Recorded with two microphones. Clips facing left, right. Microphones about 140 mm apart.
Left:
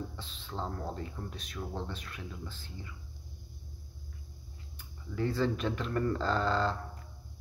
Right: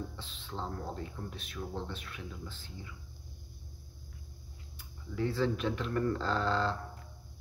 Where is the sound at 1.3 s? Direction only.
40° left (ahead or behind).